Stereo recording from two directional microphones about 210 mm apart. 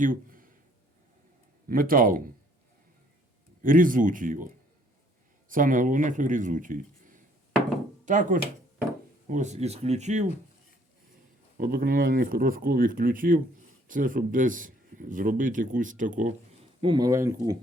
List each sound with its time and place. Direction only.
0.0 s a sound: 40° right (ahead or behind)
1.6 s speech: 40° right (ahead or behind)
3.6 s speech: 40° right (ahead or behind)
5.5 s speech: 40° right (ahead or behind)
11.5 s speech: 45° right (ahead or behind)
16.8 s speech: 20° right (ahead or behind)